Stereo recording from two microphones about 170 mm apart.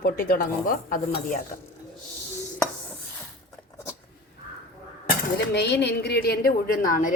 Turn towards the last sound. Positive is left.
turn(degrees=50)  # may be behind; listen again after turning